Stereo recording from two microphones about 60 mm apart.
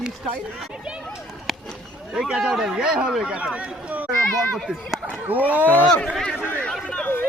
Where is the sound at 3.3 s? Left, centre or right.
Centre.